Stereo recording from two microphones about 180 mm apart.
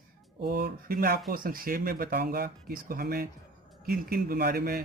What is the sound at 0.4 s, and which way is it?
A man's voice, 55° right (ahead or behind).